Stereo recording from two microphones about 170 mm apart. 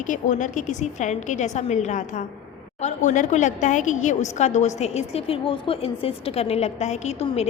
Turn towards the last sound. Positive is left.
turn(degrees=40)  # may be behind; listen again after turning